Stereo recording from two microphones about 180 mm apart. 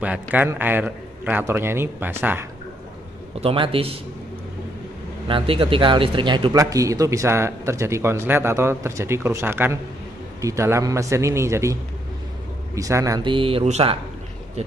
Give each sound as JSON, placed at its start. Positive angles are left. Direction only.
{"t": 0.0, "sound": "a man's voice", "side_deg": -10}
{"t": 3.3, "sound": "a man's voice", "side_deg": -30}
{"t": 5.3, "sound": "a man's voice", "side_deg": -30}